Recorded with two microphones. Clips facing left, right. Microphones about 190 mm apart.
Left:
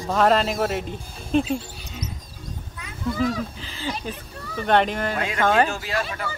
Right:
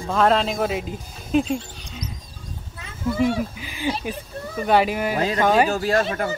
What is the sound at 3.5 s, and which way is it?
Speech, 15° right (ahead or behind).